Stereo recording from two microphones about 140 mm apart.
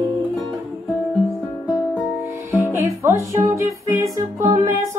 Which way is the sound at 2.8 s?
25° right (ahead or behind).